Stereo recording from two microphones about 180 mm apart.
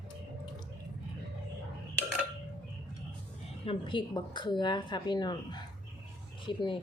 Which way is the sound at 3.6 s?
25° left (ahead or behind).